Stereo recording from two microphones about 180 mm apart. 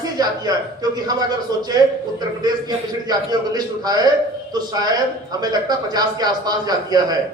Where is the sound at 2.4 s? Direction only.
25° right (ahead or behind).